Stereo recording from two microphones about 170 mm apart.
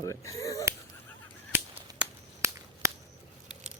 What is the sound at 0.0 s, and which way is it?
Speech, 20° left (ahead or behind).